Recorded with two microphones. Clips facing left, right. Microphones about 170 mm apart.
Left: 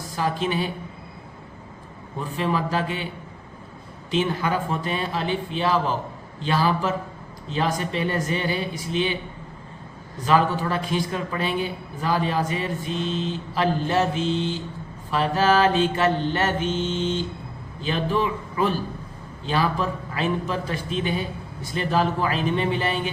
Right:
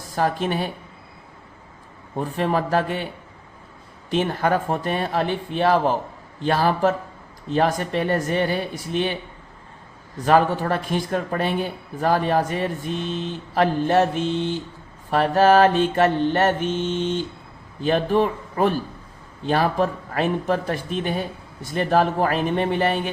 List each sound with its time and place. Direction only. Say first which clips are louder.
0.2 s speech: right 2 dB; 50° right (ahead or behind)
2.1 s speech: right 3 dB; 55° right (ahead or behind)
4.1 s speech: right 3 dB; 50° right (ahead or behind)
10.2 s speech: right 3 dB; 55° right (ahead or behind)